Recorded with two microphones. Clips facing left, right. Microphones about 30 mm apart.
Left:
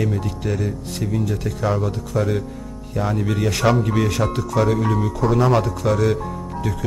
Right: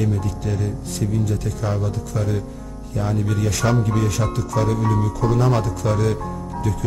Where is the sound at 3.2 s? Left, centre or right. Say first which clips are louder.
Left 4 dB; left.